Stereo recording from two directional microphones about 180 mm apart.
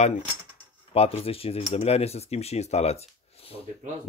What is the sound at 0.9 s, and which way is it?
Speech, 35° left (ahead or behind).